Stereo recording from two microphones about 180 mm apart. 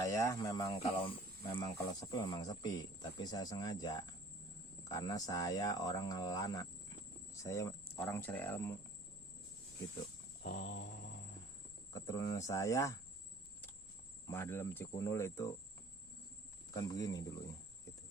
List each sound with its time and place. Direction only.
0.0 s speech: 15° left (ahead or behind)
0.8 s speech: 30° left (ahead or behind)
1.5 s speech: 20° left (ahead or behind)
10.4 s a sound: 50° left (ahead or behind)
11.9 s speech: 15° left (ahead or behind)
14.3 s speech: 15° left (ahead or behind)
16.7 s speech: 20° left (ahead or behind)